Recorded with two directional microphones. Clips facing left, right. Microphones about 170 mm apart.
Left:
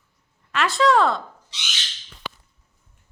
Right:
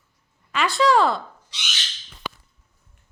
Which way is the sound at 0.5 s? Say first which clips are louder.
Even; centre (ahead or behind).